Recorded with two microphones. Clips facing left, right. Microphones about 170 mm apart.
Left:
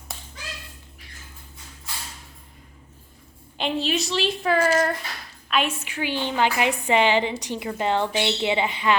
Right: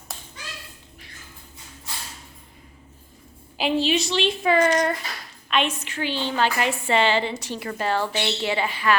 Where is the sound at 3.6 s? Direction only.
Centre (ahead or behind).